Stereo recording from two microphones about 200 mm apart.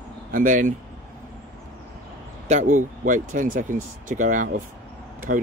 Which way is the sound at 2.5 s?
35° right (ahead or behind).